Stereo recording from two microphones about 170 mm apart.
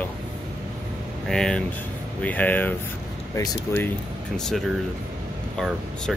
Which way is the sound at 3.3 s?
20° left (ahead or behind).